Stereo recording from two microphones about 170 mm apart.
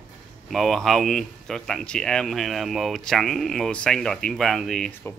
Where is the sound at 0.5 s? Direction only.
Centre (ahead or behind).